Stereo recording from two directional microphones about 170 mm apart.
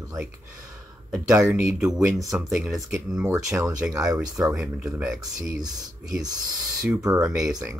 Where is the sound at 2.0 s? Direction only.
20° right (ahead or behind).